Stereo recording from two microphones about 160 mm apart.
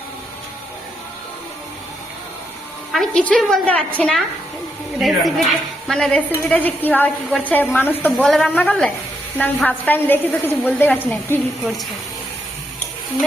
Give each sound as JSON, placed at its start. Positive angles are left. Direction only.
{"t": 2.9, "sound": "a woman's voice", "side_deg": 5}